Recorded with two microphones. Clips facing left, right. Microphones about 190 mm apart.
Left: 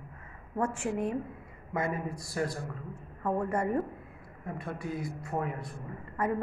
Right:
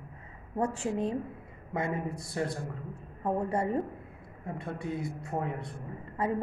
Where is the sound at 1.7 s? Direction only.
25° right (ahead or behind).